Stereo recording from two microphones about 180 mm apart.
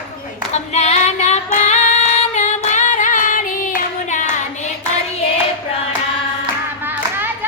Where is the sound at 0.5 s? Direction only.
40° left (ahead or behind).